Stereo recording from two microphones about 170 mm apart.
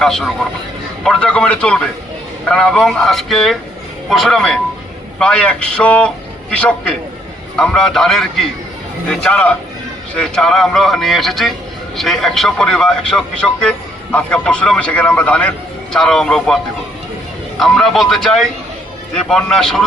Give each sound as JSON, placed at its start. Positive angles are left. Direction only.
{"t": 0.0, "sound": "a man's voice", "side_deg": 0}
{"t": 17.6, "sound": "a man's voice", "side_deg": 0}